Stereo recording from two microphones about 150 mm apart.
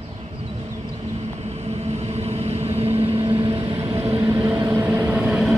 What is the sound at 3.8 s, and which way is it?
Vehicle, 20° right (ahead or behind).